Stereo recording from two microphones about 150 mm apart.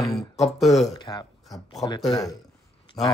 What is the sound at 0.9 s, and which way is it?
Speech, 25° left (ahead or behind).